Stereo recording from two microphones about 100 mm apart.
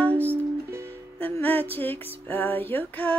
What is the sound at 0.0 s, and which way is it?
Music, 15° left (ahead or behind).